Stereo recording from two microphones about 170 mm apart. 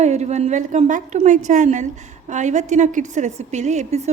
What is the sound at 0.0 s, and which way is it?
A woman's voice, 40° right (ahead or behind).